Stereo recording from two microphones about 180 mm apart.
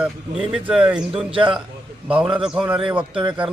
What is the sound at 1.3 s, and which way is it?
Speech, 30° right (ahead or behind).